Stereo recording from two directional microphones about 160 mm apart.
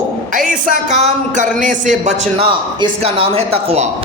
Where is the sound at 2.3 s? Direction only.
35° right (ahead or behind).